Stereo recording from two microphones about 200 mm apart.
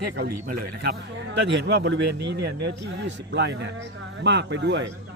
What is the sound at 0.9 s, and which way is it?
Speech, 60° right (ahead or behind).